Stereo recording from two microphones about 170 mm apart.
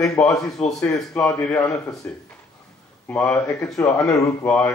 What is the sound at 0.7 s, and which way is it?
A man's voice, 5° left (ahead or behind).